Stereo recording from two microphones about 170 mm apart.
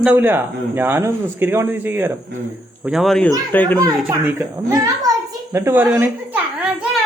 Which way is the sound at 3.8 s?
15° right (ahead or behind).